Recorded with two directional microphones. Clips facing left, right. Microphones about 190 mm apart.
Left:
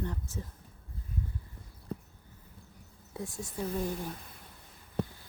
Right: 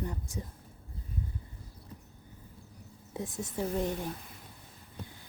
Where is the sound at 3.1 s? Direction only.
20° right (ahead or behind).